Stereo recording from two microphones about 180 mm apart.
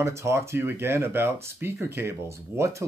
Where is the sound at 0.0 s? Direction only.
15° right (ahead or behind).